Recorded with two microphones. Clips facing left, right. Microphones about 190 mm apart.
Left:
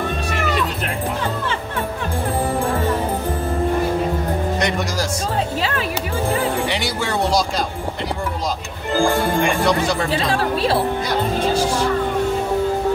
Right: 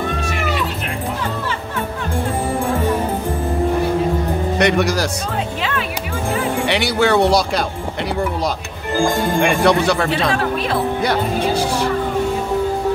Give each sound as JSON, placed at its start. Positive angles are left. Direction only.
{"t": 4.6, "sound": "speech", "side_deg": -65}
{"t": 6.7, "sound": "speech", "side_deg": -65}
{"t": 8.9, "sound": "speech", "side_deg": -15}
{"t": 9.4, "sound": "speech", "side_deg": -65}
{"t": 10.5, "sound": "a woman's voice", "side_deg": 30}